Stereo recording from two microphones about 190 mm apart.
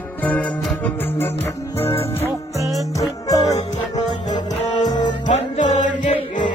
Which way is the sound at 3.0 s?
15° left (ahead or behind).